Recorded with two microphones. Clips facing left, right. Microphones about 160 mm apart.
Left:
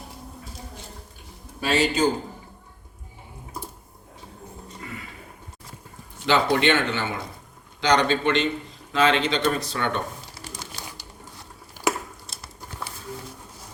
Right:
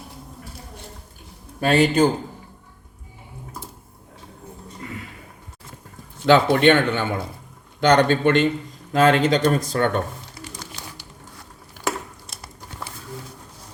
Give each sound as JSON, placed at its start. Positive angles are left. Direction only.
{"t": 1.6, "sound": "a man's voice", "side_deg": -55}
{"t": 6.2, "sound": "speech", "side_deg": -50}
{"t": 10.4, "sound": "music", "side_deg": 35}